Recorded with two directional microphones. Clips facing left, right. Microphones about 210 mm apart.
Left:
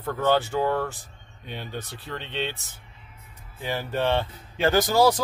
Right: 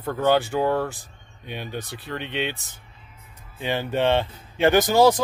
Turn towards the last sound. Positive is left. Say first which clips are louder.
# right 3 dB
turn(degrees=-20)  # may be behind; listen again after turning